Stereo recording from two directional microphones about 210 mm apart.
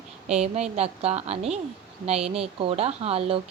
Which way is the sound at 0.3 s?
30° right (ahead or behind).